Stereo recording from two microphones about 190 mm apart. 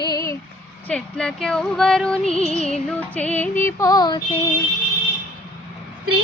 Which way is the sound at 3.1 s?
10° left (ahead or behind).